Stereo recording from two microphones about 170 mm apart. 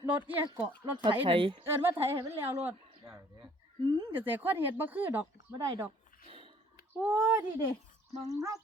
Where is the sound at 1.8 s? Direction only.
15° right (ahead or behind).